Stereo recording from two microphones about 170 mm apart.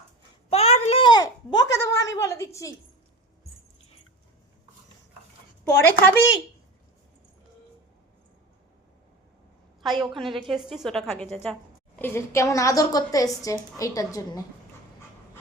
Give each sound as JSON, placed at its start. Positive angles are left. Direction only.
{"t": 0.5, "sound": "a sound", "side_deg": 40}
{"t": 5.7, "sound": "a woman's voice", "side_deg": 15}
{"t": 10.1, "sound": "a woman's voice", "side_deg": 0}
{"t": 11.9, "sound": "a woman's voice", "side_deg": 15}